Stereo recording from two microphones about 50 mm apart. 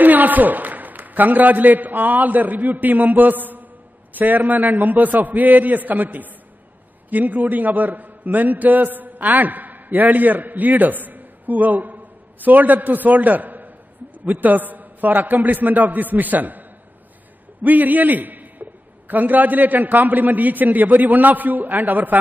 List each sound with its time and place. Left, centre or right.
0.0 s a man's voice: right
17.6 s a man's voice: right